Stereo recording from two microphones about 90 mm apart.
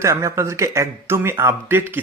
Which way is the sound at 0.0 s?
35° right (ahead or behind).